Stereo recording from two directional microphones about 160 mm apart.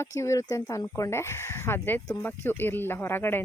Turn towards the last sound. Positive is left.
turn(degrees=15)  # may be behind; listen again after turning